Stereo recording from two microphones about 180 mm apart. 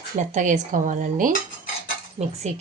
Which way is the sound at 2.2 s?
35° right (ahead or behind).